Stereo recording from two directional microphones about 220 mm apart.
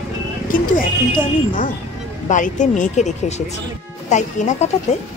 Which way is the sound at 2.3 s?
35° left (ahead or behind).